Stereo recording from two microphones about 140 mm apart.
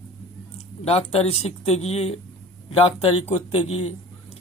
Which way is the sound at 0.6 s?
50° left (ahead or behind).